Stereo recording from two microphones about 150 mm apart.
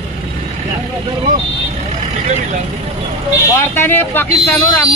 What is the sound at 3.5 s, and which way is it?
Speech, 15° left (ahead or behind).